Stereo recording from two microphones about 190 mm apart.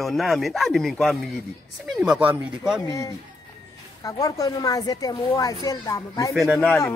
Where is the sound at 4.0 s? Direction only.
15° left (ahead or behind).